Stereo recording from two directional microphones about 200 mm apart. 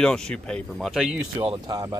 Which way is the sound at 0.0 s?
5° left (ahead or behind).